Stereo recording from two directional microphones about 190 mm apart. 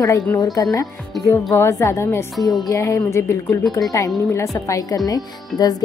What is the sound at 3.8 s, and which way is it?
Speech, centre (ahead or behind).